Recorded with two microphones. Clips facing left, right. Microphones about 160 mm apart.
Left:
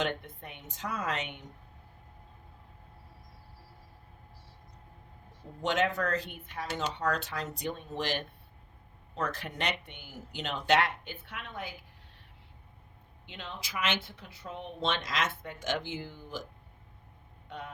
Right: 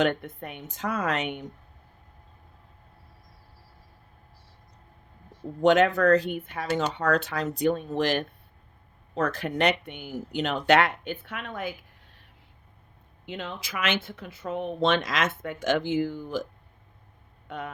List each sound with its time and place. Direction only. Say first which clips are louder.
0.0 s speech: right 8 dB; 55° right (ahead or behind)
5.6 s speech: right 10 dB; 65° right (ahead or behind)
13.2 s speech: right 8 dB; 50° right (ahead or behind)